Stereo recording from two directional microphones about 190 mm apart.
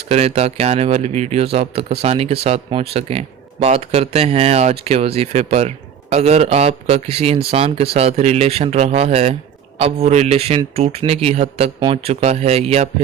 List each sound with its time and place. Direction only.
0.1 s a man's voice: 35° right (ahead or behind)